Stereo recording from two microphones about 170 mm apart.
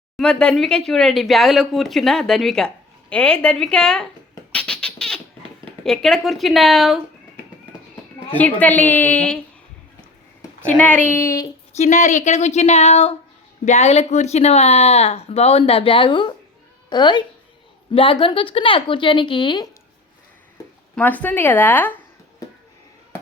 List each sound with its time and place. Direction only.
0.2 s speech: 5° left (ahead or behind)
4.5 s a sound: 5° left (ahead or behind)
5.8 s speech: centre (ahead or behind)
8.4 s a woman's voice: 10° left (ahead or behind)
10.8 s a woman's voice: 10° left (ahead or behind)
11.8 s a woman's voice: 45° left (ahead or behind); by 19.6 s 30° left (ahead or behind)
20.9 s a woman's voice: 10° left (ahead or behind)